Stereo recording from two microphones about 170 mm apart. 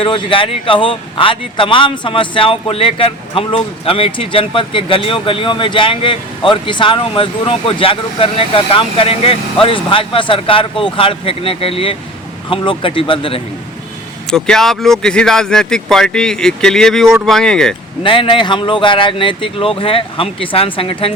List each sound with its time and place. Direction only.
0.0 s speech: 30° left (ahead or behind)
14.3 s speech: 5° left (ahead or behind)
18.0 s speech: 30° left (ahead or behind)